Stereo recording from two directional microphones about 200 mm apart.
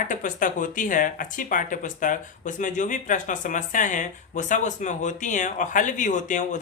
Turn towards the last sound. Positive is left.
turn(degrees=40)  # may be behind; listen again after turning